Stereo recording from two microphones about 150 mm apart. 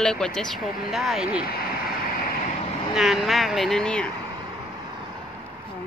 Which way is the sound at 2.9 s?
Centre (ahead or behind).